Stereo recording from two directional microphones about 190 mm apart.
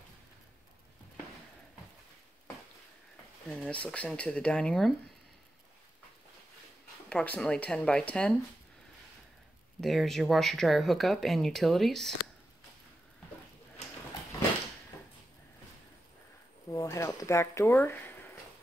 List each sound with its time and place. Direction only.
3.4 s speech: 5° left (ahead or behind)
7.1 s speech: 5° left (ahead or behind)
9.8 s speech: centre (ahead or behind)
16.7 s a sound: 15° left (ahead or behind)